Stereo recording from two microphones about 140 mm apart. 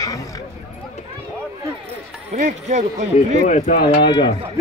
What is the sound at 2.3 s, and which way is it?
Speech, 60° right (ahead or behind).